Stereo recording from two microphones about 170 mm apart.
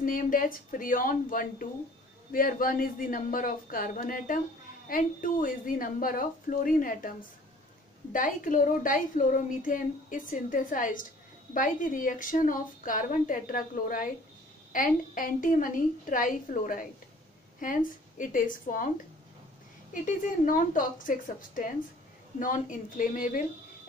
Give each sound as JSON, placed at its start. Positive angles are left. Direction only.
{"t": 0.0, "sound": "a woman's voice", "side_deg": 55}
{"t": 19.9, "sound": "a woman's voice", "side_deg": 50}